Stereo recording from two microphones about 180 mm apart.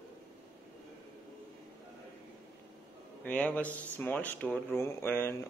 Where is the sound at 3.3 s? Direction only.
10° left (ahead or behind).